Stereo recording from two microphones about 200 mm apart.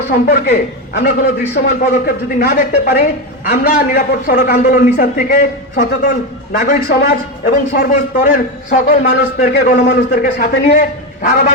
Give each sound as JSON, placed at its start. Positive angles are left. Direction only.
{"t": 0.1, "sound": "a man's voice", "side_deg": 45}